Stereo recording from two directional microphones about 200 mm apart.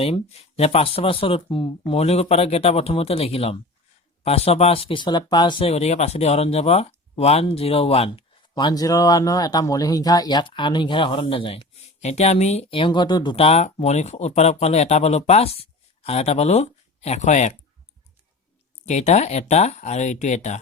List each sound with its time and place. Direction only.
0.0 s speech: 30° left (ahead or behind)
18.9 s speech: 35° left (ahead or behind)